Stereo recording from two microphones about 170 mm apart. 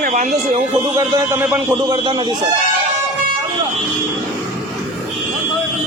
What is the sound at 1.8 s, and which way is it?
Speech, 25° right (ahead or behind).